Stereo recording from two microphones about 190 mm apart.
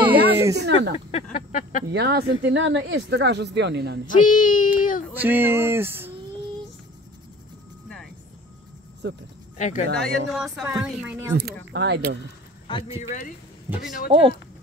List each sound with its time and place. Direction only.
0.0 s a sound: 10° right (ahead or behind)
0.6 s speech: 65° right (ahead or behind)
1.3 s a sound: 40° left (ahead or behind)
1.9 s speech: 60° right (ahead or behind)
4.1 s speech: 45° left (ahead or behind)
5.1 s speech: 10° right (ahead or behind)
9.6 s speech: 40° left (ahead or behind)
9.9 s speech: centre (ahead or behind)
11.3 s speech: 60° right (ahead or behind)
12.8 s speech: 15° right (ahead or behind)
14.0 s speech: 30° right (ahead or behind)